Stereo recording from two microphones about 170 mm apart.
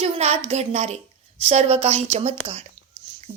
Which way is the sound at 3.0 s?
30° right (ahead or behind).